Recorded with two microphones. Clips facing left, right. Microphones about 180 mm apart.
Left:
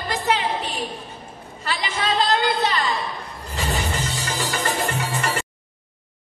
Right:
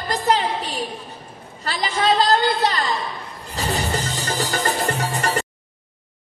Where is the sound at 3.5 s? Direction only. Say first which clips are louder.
Right 2 dB; 40° right (ahead or behind).